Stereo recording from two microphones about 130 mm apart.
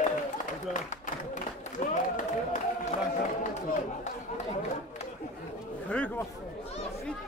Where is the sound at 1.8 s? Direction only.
80° left.